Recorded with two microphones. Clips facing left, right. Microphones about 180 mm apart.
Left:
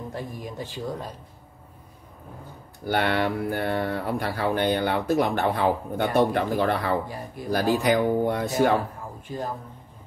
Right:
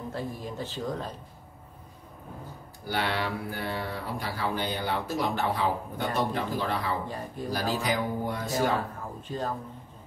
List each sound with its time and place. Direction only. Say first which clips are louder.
0.1 s speech: left 1 dB; 15° left (ahead or behind)
2.8 s speech: left 6 dB; 55° left (ahead or behind)
7.1 s speech: even; 10° left (ahead or behind)
7.8 s speech: left 8 dB; 65° left (ahead or behind)
9.3 s speech: left 1 dB; 10° left (ahead or behind)